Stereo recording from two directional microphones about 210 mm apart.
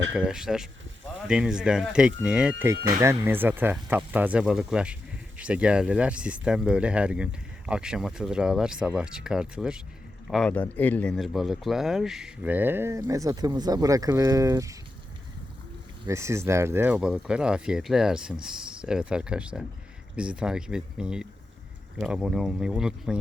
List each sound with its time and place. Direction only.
0.1 s speech: 5° right (ahead or behind)
2.7 s speech: 45° right (ahead or behind)
3.0 s speech: 10° right (ahead or behind)
16.0 s speech: 15° right (ahead or behind)